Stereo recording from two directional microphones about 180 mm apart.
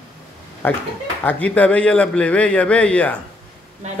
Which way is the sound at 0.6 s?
10° left (ahead or behind).